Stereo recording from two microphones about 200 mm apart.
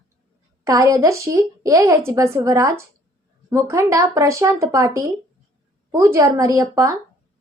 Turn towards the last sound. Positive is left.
turn(degrees=-15)  # may be behind; listen again after turning